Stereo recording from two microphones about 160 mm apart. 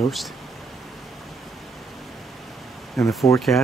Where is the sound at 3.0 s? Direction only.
Centre (ahead or behind).